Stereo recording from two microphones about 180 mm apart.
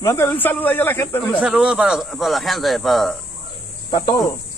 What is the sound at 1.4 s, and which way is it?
Speech, 5° right (ahead or behind).